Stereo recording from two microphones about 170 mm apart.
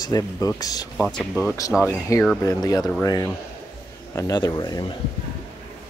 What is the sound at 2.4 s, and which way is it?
Speech, 20° left (ahead or behind).